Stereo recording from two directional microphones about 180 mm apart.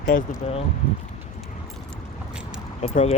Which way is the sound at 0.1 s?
45° left (ahead or behind).